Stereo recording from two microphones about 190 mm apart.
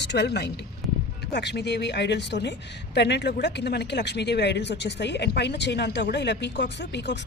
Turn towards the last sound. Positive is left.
turn(degrees=65)  # may be behind; listen again after turning